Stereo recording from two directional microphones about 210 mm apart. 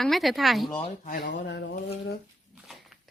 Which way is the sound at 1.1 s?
45° left (ahead or behind).